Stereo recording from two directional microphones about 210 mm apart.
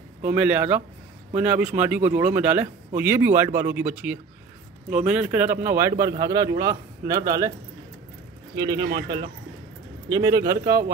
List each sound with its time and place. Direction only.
0.3 s speech: 5° right (ahead or behind)
8.5 s speech: 20° right (ahead or behind)
10.0 s speech: 15° right (ahead or behind)